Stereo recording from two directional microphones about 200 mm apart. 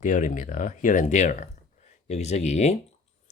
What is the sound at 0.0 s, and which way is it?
Speech, 40° left (ahead or behind).